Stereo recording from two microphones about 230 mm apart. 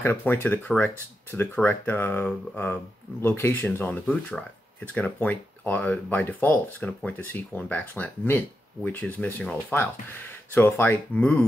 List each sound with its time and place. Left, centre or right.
0.0 s speech: centre